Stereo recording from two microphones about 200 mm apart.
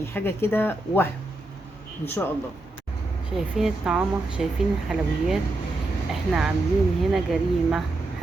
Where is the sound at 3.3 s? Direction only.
Centre (ahead or behind).